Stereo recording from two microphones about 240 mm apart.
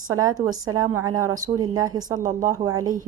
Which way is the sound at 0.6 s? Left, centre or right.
Centre.